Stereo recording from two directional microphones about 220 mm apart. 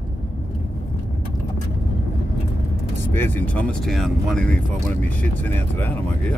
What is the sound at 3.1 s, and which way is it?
Speech, 10° left (ahead or behind).